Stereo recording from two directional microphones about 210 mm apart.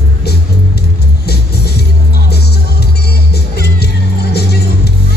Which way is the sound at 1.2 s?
50° left (ahead or behind).